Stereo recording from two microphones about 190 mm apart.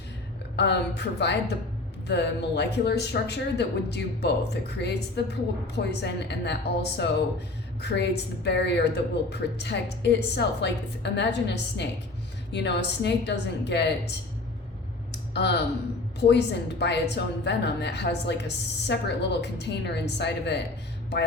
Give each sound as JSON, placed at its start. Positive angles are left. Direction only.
{"t": 0.5, "sound": "a woman's voice", "side_deg": 65}
{"t": 15.3, "sound": "a woman's voice", "side_deg": 60}